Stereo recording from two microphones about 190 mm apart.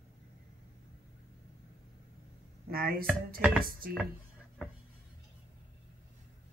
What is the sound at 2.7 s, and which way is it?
Speech, 50° right (ahead or behind).